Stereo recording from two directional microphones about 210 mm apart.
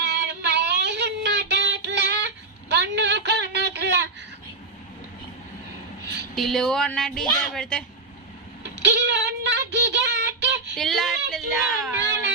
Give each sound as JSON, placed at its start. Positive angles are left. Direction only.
{"t": 0.0, "sound": "child singing", "side_deg": -50}
{"t": 6.3, "sound": "speech", "side_deg": 0}
{"t": 8.7, "sound": "child singing", "side_deg": -55}
{"t": 10.8, "sound": "speech", "side_deg": 0}